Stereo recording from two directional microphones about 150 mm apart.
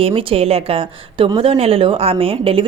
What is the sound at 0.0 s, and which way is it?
A woman's voice, 35° right (ahead or behind).